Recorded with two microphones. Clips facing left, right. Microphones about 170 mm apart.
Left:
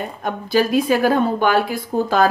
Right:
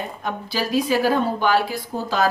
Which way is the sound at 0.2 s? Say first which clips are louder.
Left 9 dB; 50° left (ahead or behind).